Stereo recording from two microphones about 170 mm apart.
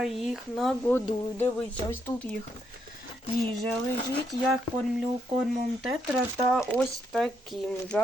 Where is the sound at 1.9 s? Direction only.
10° left (ahead or behind).